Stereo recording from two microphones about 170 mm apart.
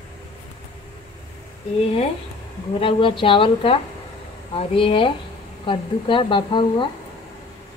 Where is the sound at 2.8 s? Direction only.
30° left (ahead or behind).